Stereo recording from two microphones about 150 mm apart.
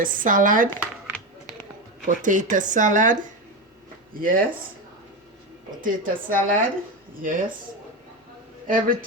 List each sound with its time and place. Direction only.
0.0 s speech: 65° right (ahead or behind)
2.0 s speech: 60° right (ahead or behind)
4.1 s speech: 70° right (ahead or behind)
5.8 s speech: 65° right (ahead or behind)
8.6 s speech: 65° right (ahead or behind)